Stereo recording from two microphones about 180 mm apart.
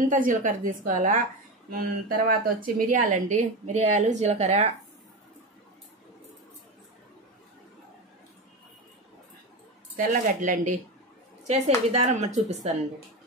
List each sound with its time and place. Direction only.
0.1 s a woman's voice: 45° right (ahead or behind)
9.9 s a woman's voice: 45° right (ahead or behind)